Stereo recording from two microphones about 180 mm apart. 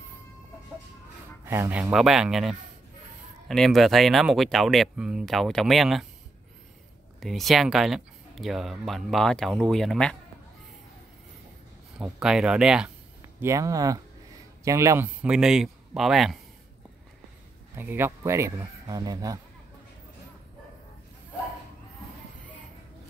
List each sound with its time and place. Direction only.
1.4 s speech: 15° right (ahead or behind)
7.2 s speech: centre (ahead or behind)
12.0 s speech: 5° right (ahead or behind)
13.4 s speech: 15° right (ahead or behind)
15.2 s speech: 5° right (ahead or behind)
17.7 s speech: 10° right (ahead or behind)